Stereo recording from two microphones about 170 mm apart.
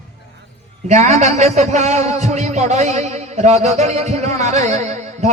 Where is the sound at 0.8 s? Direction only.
40° right (ahead or behind).